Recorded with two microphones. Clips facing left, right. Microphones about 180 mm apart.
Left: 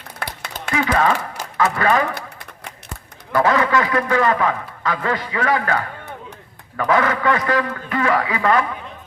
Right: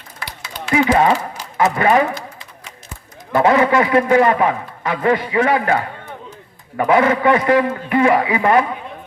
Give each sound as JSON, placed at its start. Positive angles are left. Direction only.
{"t": 0.2, "sound": "a sound", "side_deg": 60}
{"t": 0.7, "sound": "a man's voice", "side_deg": -20}
{"t": 3.3, "sound": "a man's voice", "side_deg": -25}